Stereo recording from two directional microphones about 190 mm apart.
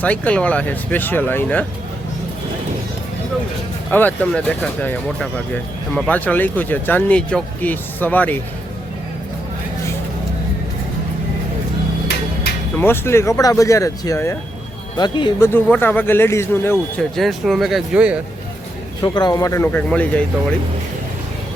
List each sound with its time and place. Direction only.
0.0 s speech: 5° left (ahead or behind)
3.9 s speech: 10° left (ahead or behind)
12.8 s speech: 10° left (ahead or behind)
15.5 s speech: 10° left (ahead or behind)
17.2 s speech: centre (ahead or behind)
19.0 s speech: 20° left (ahead or behind)